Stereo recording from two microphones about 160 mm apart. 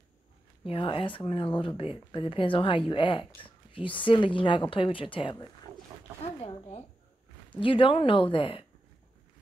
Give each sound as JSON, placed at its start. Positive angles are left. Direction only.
{"t": 0.7, "sound": "speech", "side_deg": 35}
{"t": 7.6, "sound": "speech", "side_deg": 35}